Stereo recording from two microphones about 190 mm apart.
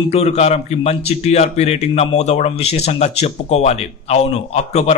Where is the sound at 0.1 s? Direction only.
35° left (ahead or behind).